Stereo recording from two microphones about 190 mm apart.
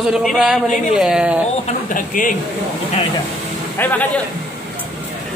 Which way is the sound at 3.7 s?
10° left (ahead or behind).